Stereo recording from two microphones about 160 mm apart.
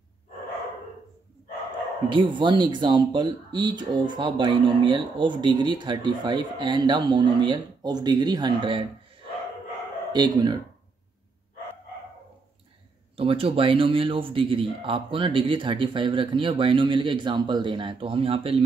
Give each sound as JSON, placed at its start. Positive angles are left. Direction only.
{"t": 2.0, "sound": "speech", "side_deg": -30}
{"t": 10.1, "sound": "speech", "side_deg": -25}
{"t": 13.1, "sound": "speech", "side_deg": -35}